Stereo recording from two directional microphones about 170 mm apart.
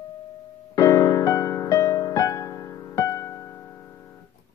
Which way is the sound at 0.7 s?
20° left (ahead or behind).